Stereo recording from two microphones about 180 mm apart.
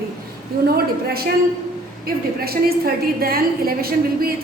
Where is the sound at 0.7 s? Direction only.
60° right (ahead or behind).